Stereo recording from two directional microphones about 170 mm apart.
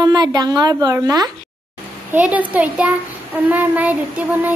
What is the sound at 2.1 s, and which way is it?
A child's voice, 10° right (ahead or behind).